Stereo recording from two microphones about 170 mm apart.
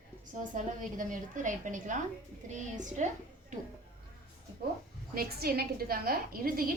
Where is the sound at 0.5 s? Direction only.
50° right (ahead or behind).